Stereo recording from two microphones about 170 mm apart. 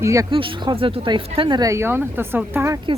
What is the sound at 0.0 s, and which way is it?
Speech, 20° right (ahead or behind).